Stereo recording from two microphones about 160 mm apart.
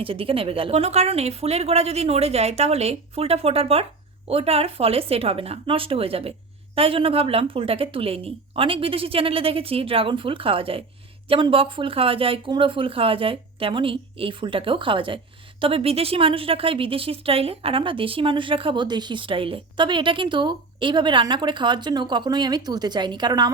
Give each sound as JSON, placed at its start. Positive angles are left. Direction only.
{"t": 0.0, "sound": "speech", "side_deg": -35}